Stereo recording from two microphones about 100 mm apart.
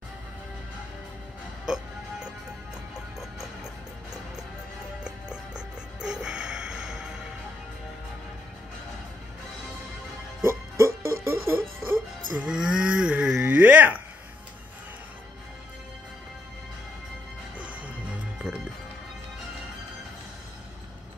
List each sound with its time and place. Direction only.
1.7 s music: 10° right (ahead or behind)
5.0 s music: 10° right (ahead or behind)
10.4 s music: 25° right (ahead or behind)
12.4 s moo: 10° right (ahead or behind)
17.6 s music: 15° right (ahead or behind)